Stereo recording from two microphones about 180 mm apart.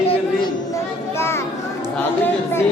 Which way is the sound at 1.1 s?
15° left (ahead or behind).